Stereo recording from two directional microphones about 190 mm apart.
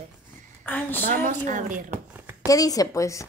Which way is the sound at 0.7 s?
10° left (ahead or behind).